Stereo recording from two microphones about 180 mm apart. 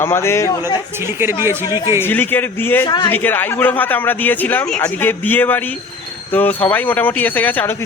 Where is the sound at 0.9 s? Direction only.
15° right (ahead or behind).